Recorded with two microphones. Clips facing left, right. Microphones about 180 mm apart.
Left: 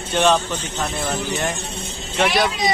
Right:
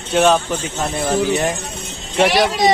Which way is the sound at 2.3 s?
90° right.